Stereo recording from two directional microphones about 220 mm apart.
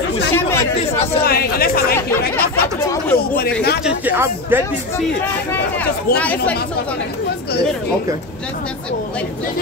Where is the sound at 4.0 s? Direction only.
10° right (ahead or behind).